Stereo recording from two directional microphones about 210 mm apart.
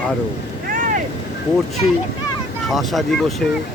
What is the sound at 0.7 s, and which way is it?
Vehicle, 40° right (ahead or behind).